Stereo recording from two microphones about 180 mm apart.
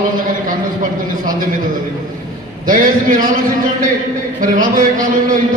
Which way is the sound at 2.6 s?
50° right (ahead or behind).